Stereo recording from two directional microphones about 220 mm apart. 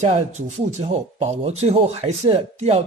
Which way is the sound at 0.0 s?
30° right (ahead or behind).